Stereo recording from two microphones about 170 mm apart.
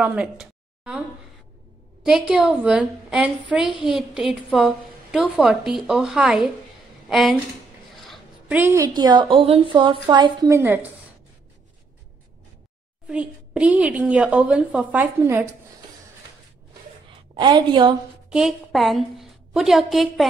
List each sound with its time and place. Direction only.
0.0 s speech: 5° right (ahead or behind)
2.0 s a woman's voice: 5° right (ahead or behind)
7.9 s a sound: centre (ahead or behind)
8.5 s a woman's voice: 15° right (ahead or behind)
13.1 s a woman's voice: 5° right (ahead or behind)
17.4 s a woman's voice: 25° right (ahead or behind)
18.3 s a woman's voice: centre (ahead or behind)